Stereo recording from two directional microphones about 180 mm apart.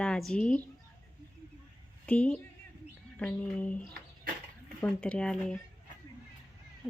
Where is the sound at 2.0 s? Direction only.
10° left (ahead or behind).